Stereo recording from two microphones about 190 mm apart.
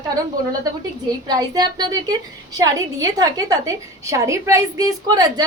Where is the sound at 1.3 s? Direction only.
20° right (ahead or behind).